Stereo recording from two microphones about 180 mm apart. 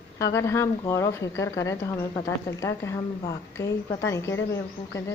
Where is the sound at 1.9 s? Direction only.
30° left (ahead or behind).